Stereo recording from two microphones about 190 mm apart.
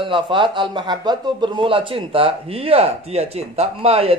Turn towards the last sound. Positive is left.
turn(degrees=-30)  # may be behind; listen again after turning